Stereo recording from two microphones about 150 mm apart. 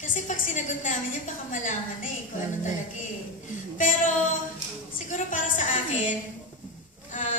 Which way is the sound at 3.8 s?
60° left (ahead or behind).